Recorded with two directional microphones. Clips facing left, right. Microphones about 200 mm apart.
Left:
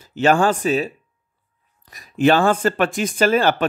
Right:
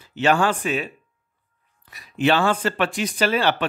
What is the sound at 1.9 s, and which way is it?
Speech, 45° left (ahead or behind).